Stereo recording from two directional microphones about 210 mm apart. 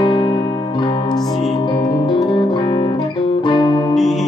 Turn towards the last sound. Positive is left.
turn(degrees=0)  # may be behind; listen again after turning